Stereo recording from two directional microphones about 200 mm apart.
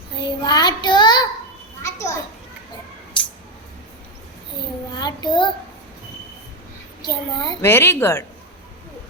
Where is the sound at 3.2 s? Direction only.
5° left (ahead or behind).